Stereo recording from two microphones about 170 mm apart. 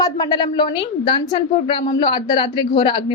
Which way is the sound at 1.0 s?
30° left (ahead or behind).